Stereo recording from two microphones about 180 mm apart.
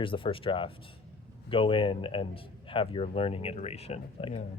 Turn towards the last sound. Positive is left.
turn(degrees=30)  # may be behind; listen again after turning